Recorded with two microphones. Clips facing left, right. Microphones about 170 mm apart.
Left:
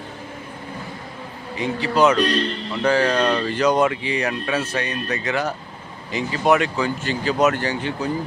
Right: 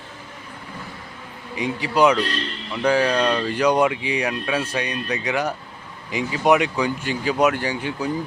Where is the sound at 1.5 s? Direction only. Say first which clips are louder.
Left 1 dB; 10° right (ahead or behind).